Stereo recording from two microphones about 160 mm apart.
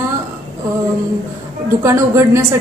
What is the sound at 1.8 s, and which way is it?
Speech, 20° right (ahead or behind).